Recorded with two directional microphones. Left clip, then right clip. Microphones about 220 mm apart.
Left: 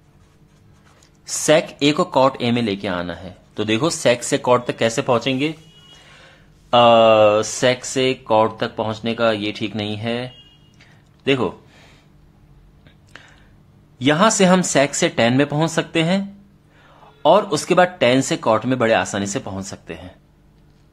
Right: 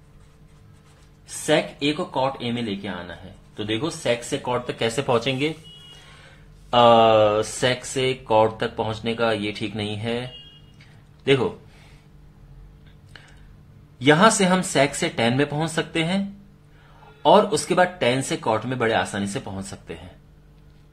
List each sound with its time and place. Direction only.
1.2 s speech: 45° left (ahead or behind); by 10.3 s 20° left (ahead or behind)
10.8 s a sound: 20° left (ahead or behind)
13.9 s speech: 25° left (ahead or behind)